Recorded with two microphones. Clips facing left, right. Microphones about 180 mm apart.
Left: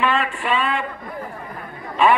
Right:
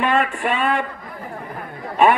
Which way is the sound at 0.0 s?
45° right (ahead or behind).